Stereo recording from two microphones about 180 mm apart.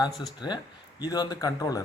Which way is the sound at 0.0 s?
25° left (ahead or behind).